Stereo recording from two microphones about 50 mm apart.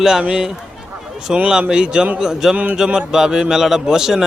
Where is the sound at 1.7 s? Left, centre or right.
Centre.